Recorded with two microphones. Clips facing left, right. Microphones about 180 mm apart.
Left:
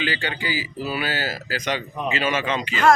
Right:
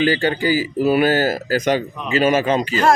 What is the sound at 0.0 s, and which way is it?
Speech, 45° right (ahead or behind).